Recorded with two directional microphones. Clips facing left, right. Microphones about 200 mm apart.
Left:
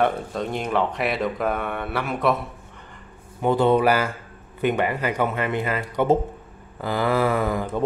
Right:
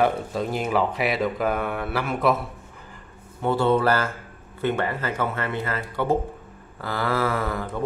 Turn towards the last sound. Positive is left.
turn(degrees=20)  # may be behind; listen again after turning